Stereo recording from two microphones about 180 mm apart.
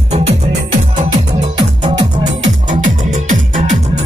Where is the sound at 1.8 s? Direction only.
25° right (ahead or behind).